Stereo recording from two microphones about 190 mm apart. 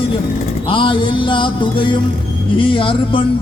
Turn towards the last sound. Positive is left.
turn(degrees=25)  # may be behind; listen again after turning